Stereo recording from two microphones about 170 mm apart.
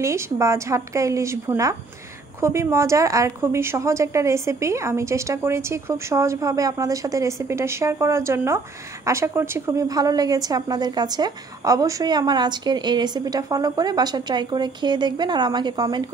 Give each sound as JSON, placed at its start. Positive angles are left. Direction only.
{"t": 0.0, "sound": "a woman's voice", "side_deg": -15}